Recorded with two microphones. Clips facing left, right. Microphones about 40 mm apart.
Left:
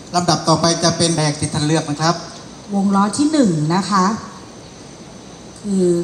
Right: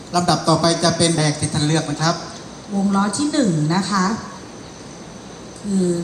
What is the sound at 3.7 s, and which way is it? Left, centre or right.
Speech, left.